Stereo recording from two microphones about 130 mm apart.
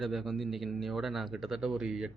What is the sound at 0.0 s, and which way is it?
A man's voice, centre (ahead or behind).